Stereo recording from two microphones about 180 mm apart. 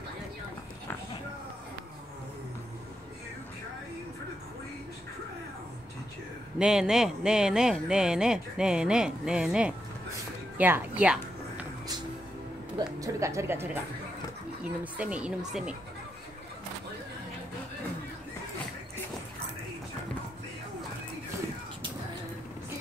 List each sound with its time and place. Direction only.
6.6 s speech: 5° right (ahead or behind)
12.7 s a sound: 20° right (ahead or behind)
14.6 s speech: 5° right (ahead or behind)